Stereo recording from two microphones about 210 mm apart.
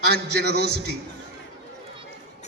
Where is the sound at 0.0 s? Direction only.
50° right (ahead or behind).